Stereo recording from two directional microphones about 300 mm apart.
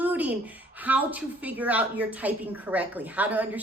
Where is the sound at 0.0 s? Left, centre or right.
Centre.